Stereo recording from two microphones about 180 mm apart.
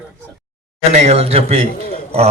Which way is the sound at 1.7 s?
50° left (ahead or behind).